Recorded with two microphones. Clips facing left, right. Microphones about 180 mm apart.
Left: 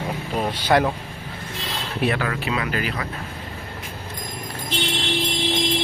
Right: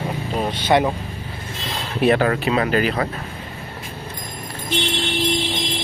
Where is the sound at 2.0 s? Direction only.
40° right (ahead or behind).